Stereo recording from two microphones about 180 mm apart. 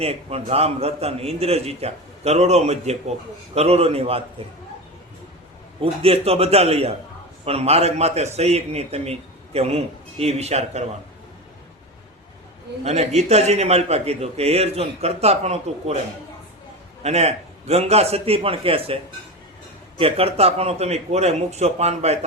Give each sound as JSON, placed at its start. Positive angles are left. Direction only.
{"t": 0.0, "sound": "a man's voice", "side_deg": -35}
{"t": 5.8, "sound": "a man's voice", "side_deg": -30}
{"t": 12.8, "sound": "a man's voice", "side_deg": -35}
{"t": 17.0, "sound": "a man's voice", "side_deg": -35}
{"t": 20.0, "sound": "a man's voice", "side_deg": -30}